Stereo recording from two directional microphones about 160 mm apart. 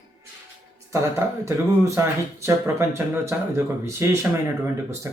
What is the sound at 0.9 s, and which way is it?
Speech, 20° right (ahead or behind).